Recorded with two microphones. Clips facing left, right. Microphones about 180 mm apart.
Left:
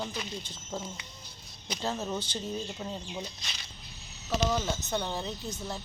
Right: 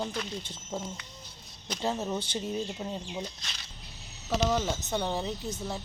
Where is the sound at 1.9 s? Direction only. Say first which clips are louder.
Right 2 dB; 10° right (ahead or behind).